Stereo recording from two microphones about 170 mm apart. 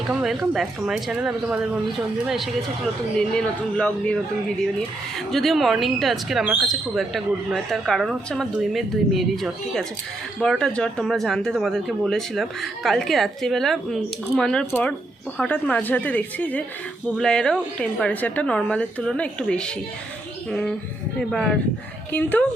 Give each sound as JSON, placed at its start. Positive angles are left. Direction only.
{"t": 0.1, "sound": "speech", "side_deg": -5}
{"t": 5.3, "sound": "speech", "side_deg": 0}